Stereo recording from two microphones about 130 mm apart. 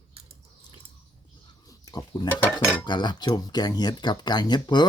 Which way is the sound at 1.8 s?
30° left (ahead or behind).